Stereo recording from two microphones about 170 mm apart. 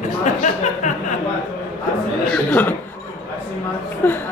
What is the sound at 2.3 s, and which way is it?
Speech, 10° left (ahead or behind).